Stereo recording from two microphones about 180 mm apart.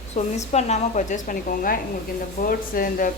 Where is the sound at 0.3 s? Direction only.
40° left (ahead or behind).